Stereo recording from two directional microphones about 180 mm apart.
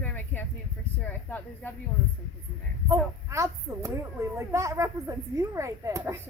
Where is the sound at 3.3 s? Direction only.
15° right (ahead or behind).